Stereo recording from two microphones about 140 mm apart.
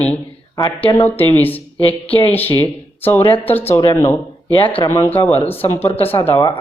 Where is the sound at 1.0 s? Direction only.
15° left (ahead or behind).